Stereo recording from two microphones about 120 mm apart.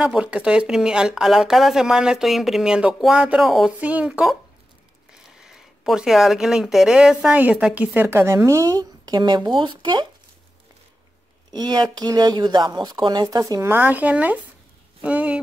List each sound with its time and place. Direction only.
0.0 s speech: 5° right (ahead or behind); by 10.0 s 40° right (ahead or behind)
11.5 s speech: 35° right (ahead or behind); by 15.4 s 10° right (ahead or behind)